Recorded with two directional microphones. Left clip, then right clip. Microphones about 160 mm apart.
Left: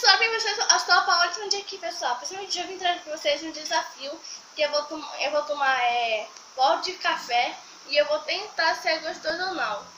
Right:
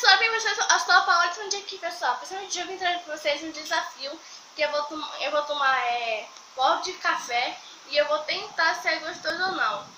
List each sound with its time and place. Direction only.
0.0 s a woman's voice: centre (ahead or behind)
5.2 s a woman's voice: centre (ahead or behind)